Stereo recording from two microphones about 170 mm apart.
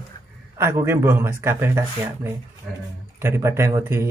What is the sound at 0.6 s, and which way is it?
Speech, 15° right (ahead or behind).